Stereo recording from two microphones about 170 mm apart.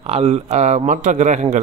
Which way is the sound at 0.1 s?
40° right (ahead or behind).